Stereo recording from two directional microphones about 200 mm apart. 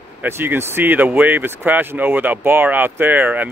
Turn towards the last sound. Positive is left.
turn(degrees=-10)  # may be behind; listen again after turning